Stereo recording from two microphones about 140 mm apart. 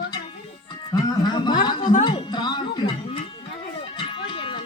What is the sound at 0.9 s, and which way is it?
Speech, 30° left (ahead or behind).